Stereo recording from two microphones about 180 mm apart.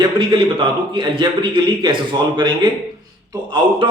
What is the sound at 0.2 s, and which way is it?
A man's voice, 30° right (ahead or behind).